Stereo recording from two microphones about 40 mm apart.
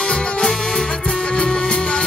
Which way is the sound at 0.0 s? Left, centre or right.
Left.